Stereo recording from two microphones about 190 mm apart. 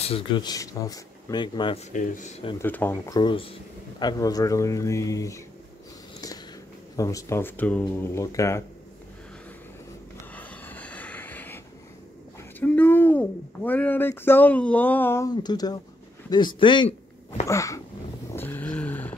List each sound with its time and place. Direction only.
0.0 s speech: 25° left (ahead or behind)
1.9 s speech: 40° left (ahead or behind)
2.6 s speech: 10° left (ahead or behind)
6.2 s a sound: 20° left (ahead or behind)
7.0 s speech: 15° left (ahead or behind)
10.3 s vehicle: 10° left (ahead or behind)
12.5 s speech: 10° left (ahead or behind)
18.3 s a sound: 10° left (ahead or behind)